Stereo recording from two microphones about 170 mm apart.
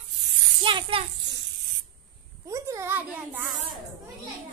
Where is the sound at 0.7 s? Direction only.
30° right (ahead or behind).